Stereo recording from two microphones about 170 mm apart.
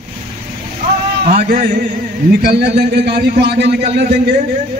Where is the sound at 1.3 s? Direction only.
55° right (ahead or behind).